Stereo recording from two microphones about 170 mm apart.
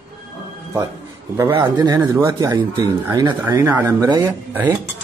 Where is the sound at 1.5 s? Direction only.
25° right (ahead or behind).